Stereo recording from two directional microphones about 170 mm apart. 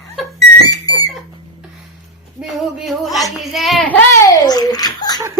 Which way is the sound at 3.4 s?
Centre (ahead or behind).